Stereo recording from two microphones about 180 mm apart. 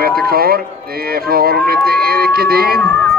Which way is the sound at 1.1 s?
60° right (ahead or behind).